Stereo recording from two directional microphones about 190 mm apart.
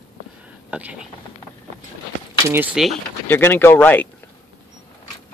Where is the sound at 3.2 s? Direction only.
10° left (ahead or behind).